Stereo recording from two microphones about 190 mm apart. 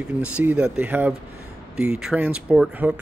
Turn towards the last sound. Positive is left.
turn(degrees=-10)  # may be behind; listen again after turning